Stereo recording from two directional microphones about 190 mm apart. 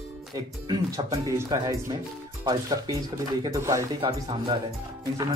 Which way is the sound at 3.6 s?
15° right (ahead or behind).